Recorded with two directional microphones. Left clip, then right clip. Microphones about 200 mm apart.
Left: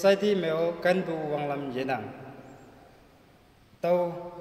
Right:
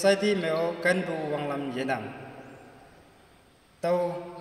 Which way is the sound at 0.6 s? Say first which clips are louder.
Even; 25° left (ahead or behind).